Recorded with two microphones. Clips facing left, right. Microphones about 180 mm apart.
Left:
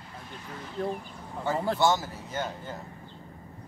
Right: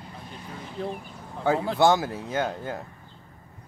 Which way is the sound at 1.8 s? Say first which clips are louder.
Right 5 dB; 55° right (ahead or behind).